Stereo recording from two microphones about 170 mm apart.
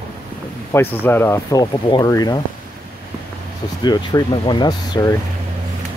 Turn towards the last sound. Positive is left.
turn(degrees=25)  # may be behind; listen again after turning